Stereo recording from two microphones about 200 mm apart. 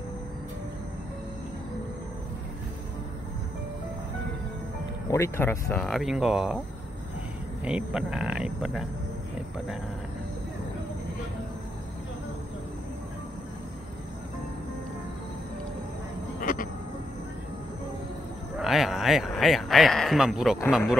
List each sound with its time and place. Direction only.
5.0 s speech: 15° left (ahead or behind); by 6.6 s 5° right (ahead or behind)
7.6 s speech: 5° right (ahead or behind)
16.3 s a sound: 40° left (ahead or behind)
18.6 s speech: centre (ahead or behind)